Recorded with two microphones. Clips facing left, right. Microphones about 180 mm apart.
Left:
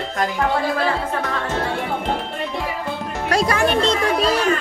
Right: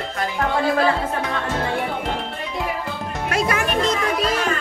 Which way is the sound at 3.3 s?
35° left (ahead or behind).